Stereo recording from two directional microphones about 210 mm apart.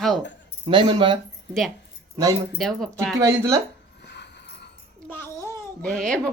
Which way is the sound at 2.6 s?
Centre (ahead or behind).